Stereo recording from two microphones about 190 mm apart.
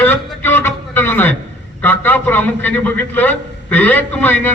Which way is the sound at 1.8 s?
10° left (ahead or behind).